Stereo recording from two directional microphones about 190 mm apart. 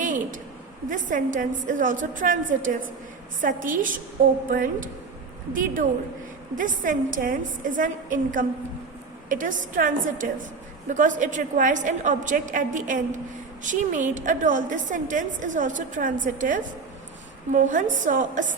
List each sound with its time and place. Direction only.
0.0 s a sound: 40° right (ahead or behind)
0.9 s a woman's voice: 45° right (ahead or behind)
6.6 s a woman's voice: 45° right (ahead or behind)